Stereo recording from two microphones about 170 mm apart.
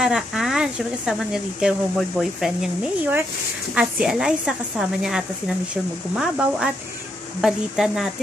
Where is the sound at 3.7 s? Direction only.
5° right (ahead or behind).